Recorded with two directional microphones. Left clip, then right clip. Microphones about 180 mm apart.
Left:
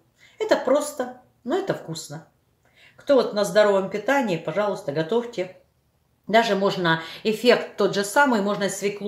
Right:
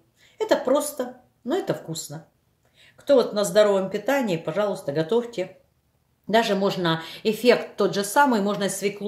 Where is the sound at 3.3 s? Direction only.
35° right (ahead or behind).